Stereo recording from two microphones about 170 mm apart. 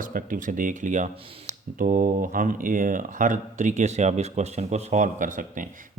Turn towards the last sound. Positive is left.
turn(degrees=-50)  # may be behind; listen again after turning